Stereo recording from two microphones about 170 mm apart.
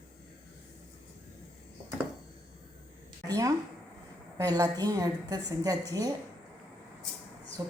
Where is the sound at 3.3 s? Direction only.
20° right (ahead or behind).